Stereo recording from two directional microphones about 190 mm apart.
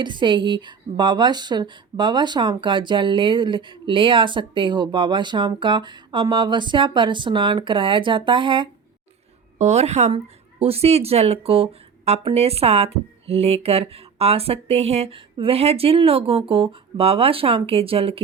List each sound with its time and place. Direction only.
0.0 s speech: 25° right (ahead or behind)